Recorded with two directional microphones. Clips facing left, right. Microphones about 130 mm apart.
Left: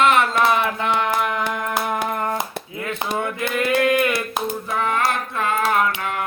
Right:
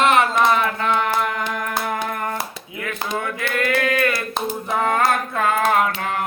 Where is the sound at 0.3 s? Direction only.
5° left (ahead or behind).